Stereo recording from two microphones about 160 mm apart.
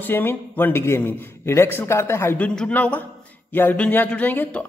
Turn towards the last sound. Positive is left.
turn(degrees=10)  # may be behind; listen again after turning